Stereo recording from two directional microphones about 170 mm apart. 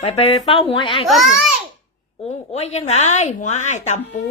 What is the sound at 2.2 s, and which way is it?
Speech, 40° left (ahead or behind).